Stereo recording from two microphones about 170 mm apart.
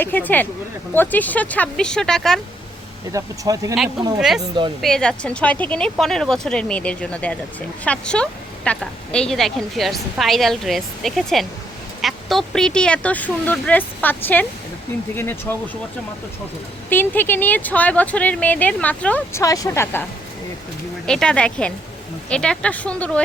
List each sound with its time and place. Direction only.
0.0 s speech: 10° left (ahead or behind)
3.1 s speech: 20° right (ahead or behind)
4.2 s a woman's voice: centre (ahead or behind)
16.9 s speech: 10° left (ahead or behind)
21.1 s a woman's voice: 5° left (ahead or behind)